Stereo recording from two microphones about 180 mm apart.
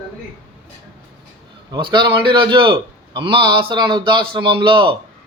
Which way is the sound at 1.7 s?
25° right (ahead or behind).